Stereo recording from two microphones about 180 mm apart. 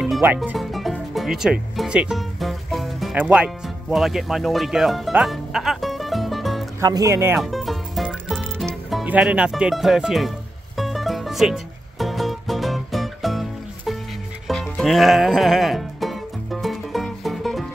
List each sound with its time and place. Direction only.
0.0 s music: 10° right (ahead or behind)
6.8 s speech: 20° right (ahead or behind)
7.3 s music: centre (ahead or behind)
8.9 s speech: 5° right (ahead or behind)
10.8 s music: centre (ahead or behind)